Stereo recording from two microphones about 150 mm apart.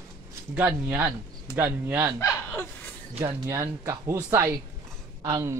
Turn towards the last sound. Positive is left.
turn(degrees=-20)  # may be behind; listen again after turning